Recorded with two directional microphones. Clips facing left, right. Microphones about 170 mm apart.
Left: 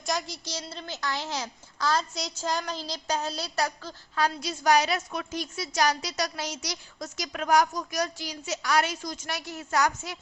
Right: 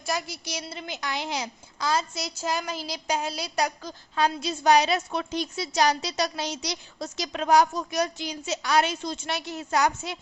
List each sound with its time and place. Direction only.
0.0 s a woman's voice: 5° right (ahead or behind); by 10.2 s 20° right (ahead or behind)